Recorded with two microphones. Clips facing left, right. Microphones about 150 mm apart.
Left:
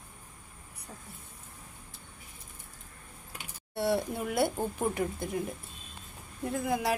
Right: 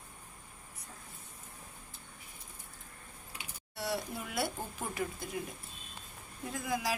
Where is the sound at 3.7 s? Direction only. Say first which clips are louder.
Left 8 dB; 55° left (ahead or behind).